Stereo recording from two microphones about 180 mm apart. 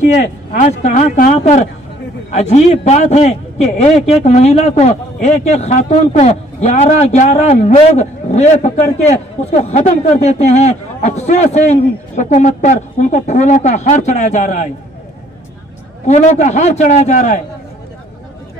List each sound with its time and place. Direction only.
0.5 s a man's voice: 45° left (ahead or behind)
16.1 s a man's voice: 40° left (ahead or behind)